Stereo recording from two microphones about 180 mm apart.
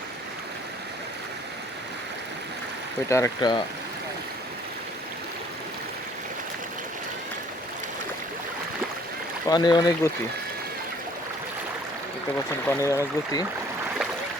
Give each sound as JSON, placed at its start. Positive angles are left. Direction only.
{"t": 3.1, "sound": "speech", "side_deg": 15}
{"t": 9.5, "sound": "speech", "side_deg": 25}
{"t": 12.6, "sound": "speech", "side_deg": 15}